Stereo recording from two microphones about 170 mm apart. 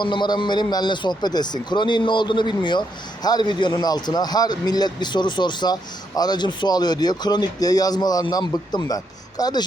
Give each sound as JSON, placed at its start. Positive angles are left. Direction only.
{"t": 0.0, "sound": "a man's voice", "side_deg": 25}